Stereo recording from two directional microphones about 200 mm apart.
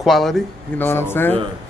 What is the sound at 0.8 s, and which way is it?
Speech, 10° left (ahead or behind).